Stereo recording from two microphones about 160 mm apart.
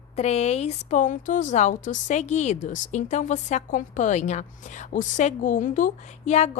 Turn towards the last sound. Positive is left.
turn(degrees=45)  # may be behind; listen again after turning